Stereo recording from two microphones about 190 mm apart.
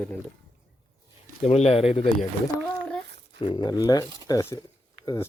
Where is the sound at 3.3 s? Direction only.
25° left (ahead or behind).